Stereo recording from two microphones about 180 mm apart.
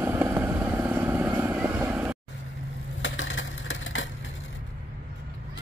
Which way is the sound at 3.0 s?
90° left.